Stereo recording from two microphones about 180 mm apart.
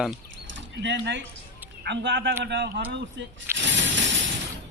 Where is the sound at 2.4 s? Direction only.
75° right (ahead or behind).